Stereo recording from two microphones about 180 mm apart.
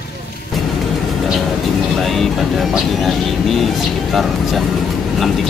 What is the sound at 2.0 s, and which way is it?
Speech, centre (ahead or behind).